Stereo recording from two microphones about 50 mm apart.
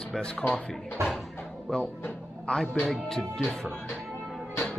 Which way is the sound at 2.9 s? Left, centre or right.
Centre.